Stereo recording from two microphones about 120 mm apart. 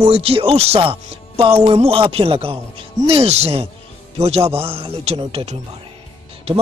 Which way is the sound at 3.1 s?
60° right (ahead or behind).